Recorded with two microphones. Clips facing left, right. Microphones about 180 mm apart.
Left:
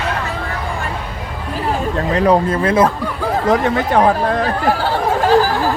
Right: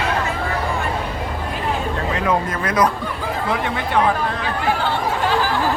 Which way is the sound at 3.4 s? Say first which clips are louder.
Left 8 dB; 40° left (ahead or behind).